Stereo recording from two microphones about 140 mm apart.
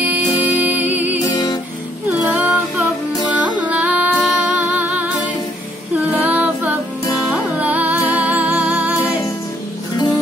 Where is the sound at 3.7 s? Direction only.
10° right (ahead or behind).